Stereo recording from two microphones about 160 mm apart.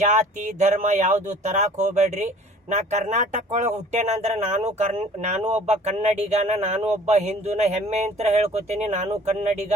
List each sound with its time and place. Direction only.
0.0 s speech: 45° right (ahead or behind)